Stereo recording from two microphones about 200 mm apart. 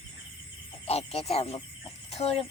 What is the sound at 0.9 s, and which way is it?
Speech, 30° left (ahead or behind).